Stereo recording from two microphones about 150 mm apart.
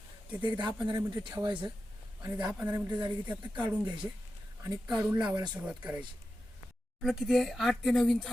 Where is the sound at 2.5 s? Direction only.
15° right (ahead or behind).